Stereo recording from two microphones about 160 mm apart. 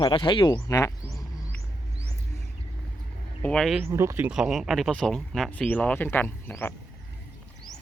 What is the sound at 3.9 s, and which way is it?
Speech, 15° right (ahead or behind).